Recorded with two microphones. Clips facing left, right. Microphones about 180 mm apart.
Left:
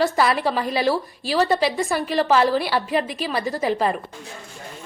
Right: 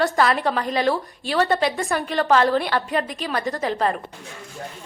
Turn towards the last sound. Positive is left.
turn(degrees=5)  # may be behind; listen again after turning